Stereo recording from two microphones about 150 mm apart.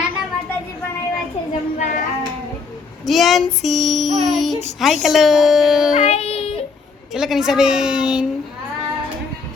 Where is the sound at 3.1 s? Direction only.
Centre (ahead or behind).